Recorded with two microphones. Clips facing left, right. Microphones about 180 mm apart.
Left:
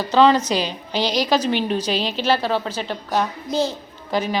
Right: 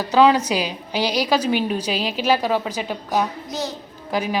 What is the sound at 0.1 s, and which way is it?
A woman's voice, 10° right (ahead or behind).